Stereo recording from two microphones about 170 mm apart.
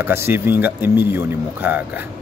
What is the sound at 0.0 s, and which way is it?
Speech, 15° right (ahead or behind).